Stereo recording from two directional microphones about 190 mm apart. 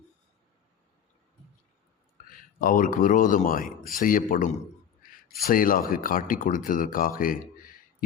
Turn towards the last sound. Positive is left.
turn(degrees=45)  # may be behind; listen again after turning